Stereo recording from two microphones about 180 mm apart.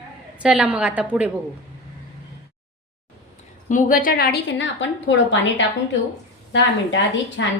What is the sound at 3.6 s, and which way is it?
A woman's voice, 45° left (ahead or behind).